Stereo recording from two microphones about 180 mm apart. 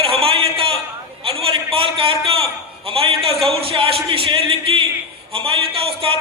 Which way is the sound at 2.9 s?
30° right (ahead or behind).